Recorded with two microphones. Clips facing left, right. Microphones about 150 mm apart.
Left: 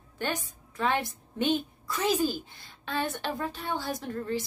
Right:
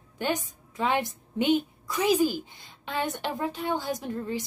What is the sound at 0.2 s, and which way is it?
A woman's voice, 15° right (ahead or behind).